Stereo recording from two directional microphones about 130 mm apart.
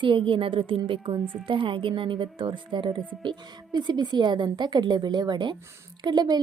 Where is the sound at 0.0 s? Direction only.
40° right (ahead or behind).